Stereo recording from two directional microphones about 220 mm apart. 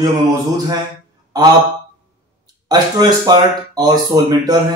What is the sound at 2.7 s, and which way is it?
Speech, 20° right (ahead or behind).